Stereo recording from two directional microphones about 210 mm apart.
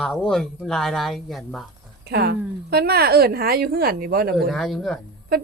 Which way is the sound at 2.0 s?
50° right (ahead or behind).